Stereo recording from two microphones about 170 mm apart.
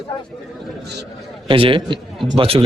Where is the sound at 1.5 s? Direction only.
30° right (ahead or behind).